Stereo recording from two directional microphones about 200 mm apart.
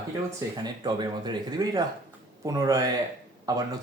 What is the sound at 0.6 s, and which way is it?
Speech, 20° right (ahead or behind).